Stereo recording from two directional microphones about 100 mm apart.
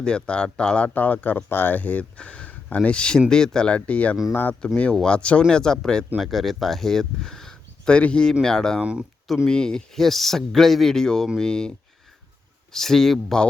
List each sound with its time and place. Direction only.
0.0 s speech: 10° left (ahead or behind)
8.8 s speech: 10° right (ahead or behind)
9.2 s speech: centre (ahead or behind)
12.7 s speech: 5° left (ahead or behind)